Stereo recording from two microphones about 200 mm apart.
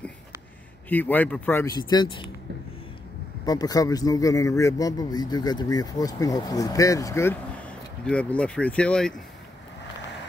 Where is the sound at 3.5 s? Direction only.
20° left (ahead or behind).